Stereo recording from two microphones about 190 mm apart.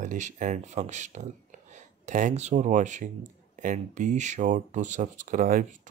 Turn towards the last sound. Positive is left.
turn(degrees=-45)  # may be behind; listen again after turning